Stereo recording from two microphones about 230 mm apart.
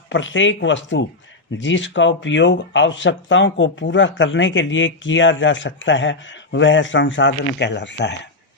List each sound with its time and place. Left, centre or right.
0.1 s speech: left